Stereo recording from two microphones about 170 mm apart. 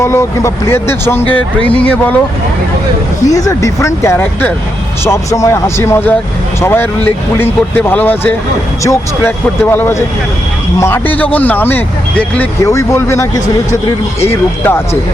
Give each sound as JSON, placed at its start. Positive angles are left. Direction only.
{"t": 0.0, "sound": "speech", "side_deg": 15}
{"t": 3.2, "sound": "speech", "side_deg": 20}